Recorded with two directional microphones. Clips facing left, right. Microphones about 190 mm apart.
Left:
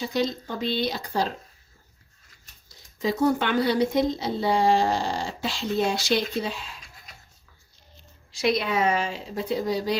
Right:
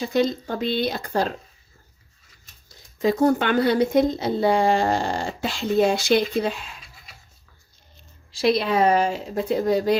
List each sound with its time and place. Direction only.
0.1 s speech: 50° right (ahead or behind)
3.0 s speech: 50° right (ahead or behind)
6.8 s a sound: centre (ahead or behind)
8.3 s speech: 30° right (ahead or behind); by 9.9 s 55° right (ahead or behind)